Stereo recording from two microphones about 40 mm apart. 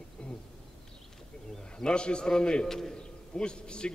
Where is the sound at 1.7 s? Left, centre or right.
Left.